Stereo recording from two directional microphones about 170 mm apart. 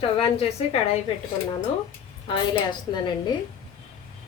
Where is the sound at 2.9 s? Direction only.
25° left (ahead or behind).